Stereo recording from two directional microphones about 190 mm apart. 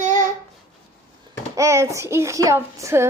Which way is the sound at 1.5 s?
15° right (ahead or behind).